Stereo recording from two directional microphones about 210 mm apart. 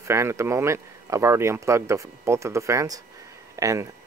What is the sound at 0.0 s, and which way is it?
Speech, 15° right (ahead or behind).